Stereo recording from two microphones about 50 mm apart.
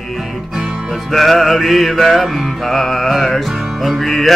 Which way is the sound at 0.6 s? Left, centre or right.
Centre.